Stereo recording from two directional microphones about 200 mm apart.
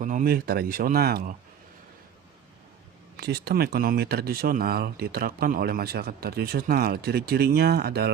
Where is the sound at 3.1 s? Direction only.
55° right (ahead or behind).